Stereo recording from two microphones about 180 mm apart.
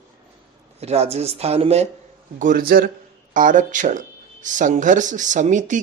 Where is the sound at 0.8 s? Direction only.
35° right (ahead or behind).